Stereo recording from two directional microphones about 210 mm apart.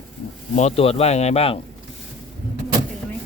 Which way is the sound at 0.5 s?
30° left (ahead or behind).